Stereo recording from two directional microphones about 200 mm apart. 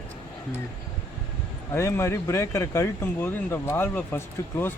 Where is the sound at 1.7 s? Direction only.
15° left (ahead or behind).